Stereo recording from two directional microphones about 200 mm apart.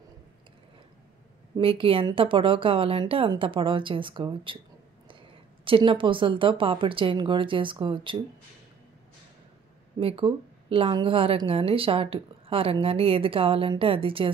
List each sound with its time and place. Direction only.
1.6 s a woman's voice: 25° right (ahead or behind)
5.7 s a woman's voice: 25° right (ahead or behind)
9.9 s a woman's voice: 25° right (ahead or behind)